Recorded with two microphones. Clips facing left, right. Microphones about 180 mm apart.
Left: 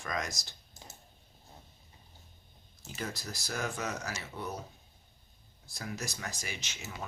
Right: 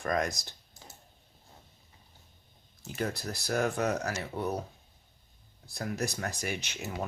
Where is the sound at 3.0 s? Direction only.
60° right (ahead or behind).